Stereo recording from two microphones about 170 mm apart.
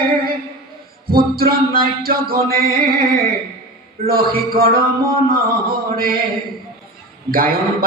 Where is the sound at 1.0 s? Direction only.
60° right (ahead or behind).